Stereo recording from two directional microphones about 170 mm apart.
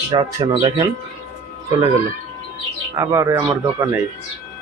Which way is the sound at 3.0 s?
20° right (ahead or behind).